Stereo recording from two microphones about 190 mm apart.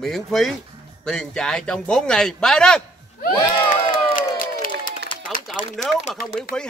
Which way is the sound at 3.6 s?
45° left (ahead or behind).